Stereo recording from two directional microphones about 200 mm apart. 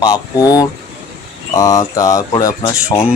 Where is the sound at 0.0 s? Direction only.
20° left (ahead or behind).